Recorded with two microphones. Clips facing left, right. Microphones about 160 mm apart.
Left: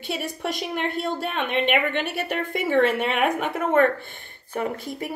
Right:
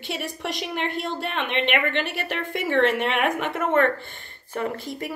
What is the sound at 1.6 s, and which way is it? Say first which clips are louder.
A woman's voice: left 1 dB; 45° left (ahead or behind).